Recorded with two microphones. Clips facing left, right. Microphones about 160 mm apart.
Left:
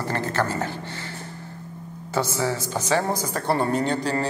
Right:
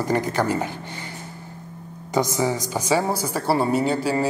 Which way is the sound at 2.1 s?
15° right (ahead or behind).